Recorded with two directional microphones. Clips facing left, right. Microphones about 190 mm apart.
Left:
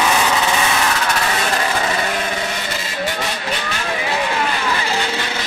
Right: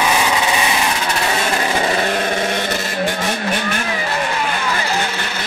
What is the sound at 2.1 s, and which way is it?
Vehicle, 45° right (ahead or behind).